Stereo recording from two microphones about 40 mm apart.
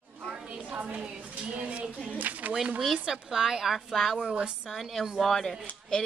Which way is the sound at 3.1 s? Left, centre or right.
Centre.